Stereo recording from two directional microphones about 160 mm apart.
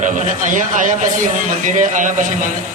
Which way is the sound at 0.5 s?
50° right (ahead or behind).